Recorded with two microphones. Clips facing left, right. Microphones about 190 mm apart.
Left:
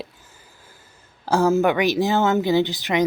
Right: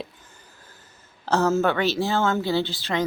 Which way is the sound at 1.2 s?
10° left (ahead or behind).